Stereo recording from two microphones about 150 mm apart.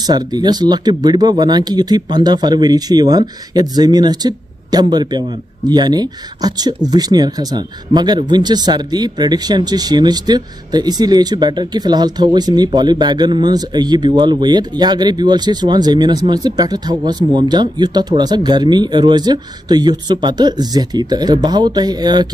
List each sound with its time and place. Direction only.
0.0 s speech: 25° right (ahead or behind)